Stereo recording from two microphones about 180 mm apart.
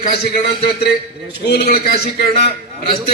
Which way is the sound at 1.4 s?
60° left (ahead or behind).